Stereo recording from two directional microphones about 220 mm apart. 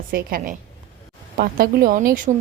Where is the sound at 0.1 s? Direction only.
40° right (ahead or behind).